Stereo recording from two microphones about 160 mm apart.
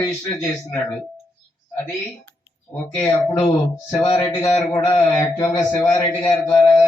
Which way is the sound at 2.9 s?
10° left (ahead or behind).